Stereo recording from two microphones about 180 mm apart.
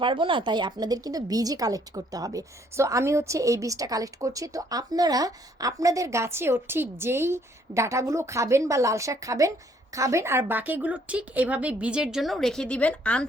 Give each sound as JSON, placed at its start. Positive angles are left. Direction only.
{"t": 0.0, "sound": "speech", "side_deg": -25}